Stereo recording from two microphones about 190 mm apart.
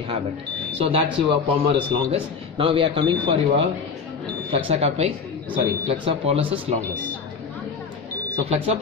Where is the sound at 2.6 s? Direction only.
30° right (ahead or behind).